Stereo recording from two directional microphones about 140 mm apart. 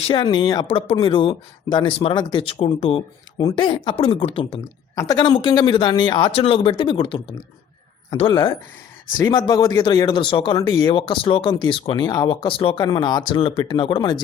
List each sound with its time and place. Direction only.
0.1 s speech: 30° left (ahead or behind)
0.7 s speech: 40° left (ahead or behind)
4.9 s speech: 30° left (ahead or behind)